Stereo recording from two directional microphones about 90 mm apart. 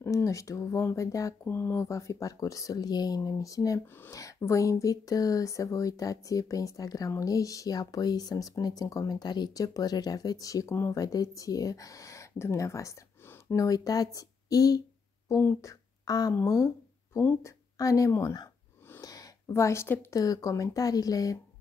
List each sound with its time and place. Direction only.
0.0 s speech: 35° left (ahead or behind)
1.4 s speech: 25° left (ahead or behind)
3.8 s speech: 25° left (ahead or behind)
4.1 s speech: 40° left (ahead or behind)
16.4 s a sound: 35° left (ahead or behind)
17.4 s speech: 35° left (ahead or behind)
18.9 s a sound: 40° left (ahead or behind)
20.2 s speech: 40° left (ahead or behind)